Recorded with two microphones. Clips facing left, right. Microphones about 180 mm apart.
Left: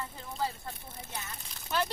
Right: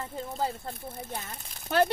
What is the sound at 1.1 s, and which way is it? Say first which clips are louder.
Speech: right 4 dB; 50° right (ahead or behind).